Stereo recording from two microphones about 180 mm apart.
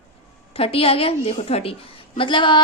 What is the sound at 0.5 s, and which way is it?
A woman's voice, 30° left (ahead or behind).